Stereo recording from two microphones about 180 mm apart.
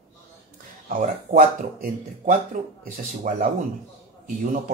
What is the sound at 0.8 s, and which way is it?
Speech, 50° right (ahead or behind).